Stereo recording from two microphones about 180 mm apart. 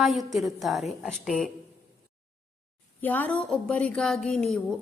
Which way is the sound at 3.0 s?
10° left (ahead or behind).